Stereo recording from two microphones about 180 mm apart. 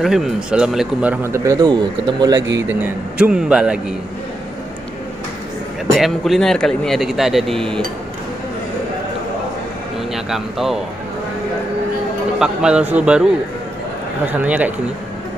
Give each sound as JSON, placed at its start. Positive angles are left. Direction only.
{"t": 0.0, "sound": "a man's voice", "side_deg": 0}
{"t": 2.7, "sound": "a man's voice", "side_deg": -10}
{"t": 5.9, "sound": "speech", "side_deg": 0}
{"t": 10.1, "sound": "speech", "side_deg": 0}
{"t": 12.4, "sound": "a man's voice", "side_deg": -5}